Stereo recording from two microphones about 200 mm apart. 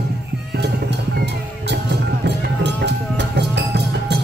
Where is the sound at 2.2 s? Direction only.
60° right (ahead or behind).